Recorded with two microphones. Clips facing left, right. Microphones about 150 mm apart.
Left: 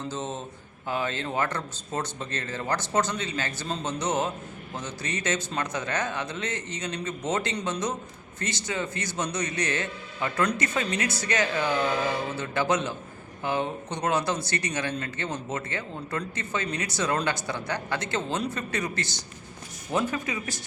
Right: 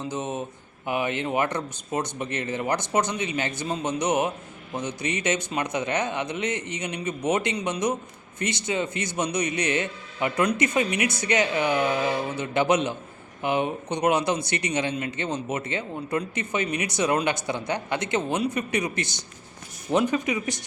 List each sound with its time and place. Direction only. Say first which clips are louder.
0.0 s speech: right 3 dB; 15° right (ahead or behind)